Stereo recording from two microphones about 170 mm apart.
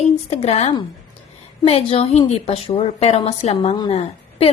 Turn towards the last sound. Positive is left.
turn(degrees=35)  # may be behind; listen again after turning